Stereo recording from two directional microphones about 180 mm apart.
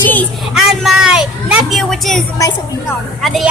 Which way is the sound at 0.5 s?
5° right (ahead or behind).